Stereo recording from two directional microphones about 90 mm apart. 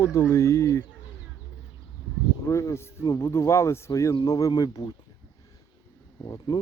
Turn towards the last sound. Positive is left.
turn(degrees=40)  # may be behind; listen again after turning